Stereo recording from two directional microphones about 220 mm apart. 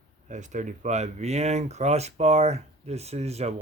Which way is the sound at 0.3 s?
35° right (ahead or behind).